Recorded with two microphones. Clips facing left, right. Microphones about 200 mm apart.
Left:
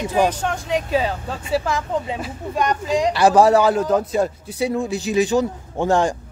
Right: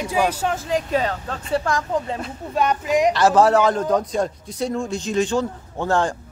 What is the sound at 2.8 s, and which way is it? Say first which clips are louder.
Speech: right 3 dB; 20° right (ahead or behind).